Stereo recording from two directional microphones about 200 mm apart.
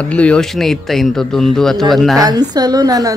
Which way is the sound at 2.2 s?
20° right (ahead or behind).